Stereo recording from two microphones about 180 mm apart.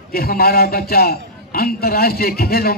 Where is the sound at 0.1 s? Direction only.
55° left (ahead or behind).